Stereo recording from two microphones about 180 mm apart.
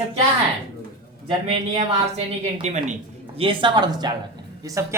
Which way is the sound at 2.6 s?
40° right (ahead or behind).